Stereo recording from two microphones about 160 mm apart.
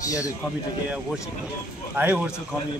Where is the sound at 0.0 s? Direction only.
20° left (ahead or behind).